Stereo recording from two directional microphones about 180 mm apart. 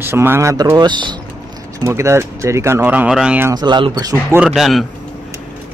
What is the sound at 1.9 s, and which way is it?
Speech, 15° right (ahead or behind).